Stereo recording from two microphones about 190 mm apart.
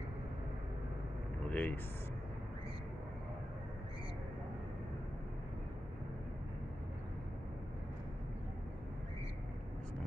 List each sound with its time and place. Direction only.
1.5 s vehicle: 10° left (ahead or behind)